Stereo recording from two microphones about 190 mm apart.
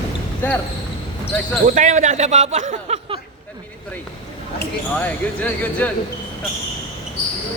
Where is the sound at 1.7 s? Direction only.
40° right (ahead or behind).